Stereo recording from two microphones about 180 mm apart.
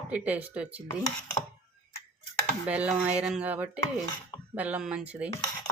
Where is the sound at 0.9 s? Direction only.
15° left (ahead or behind).